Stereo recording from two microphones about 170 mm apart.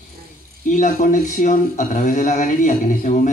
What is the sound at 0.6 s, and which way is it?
Speech, 50° left (ahead or behind).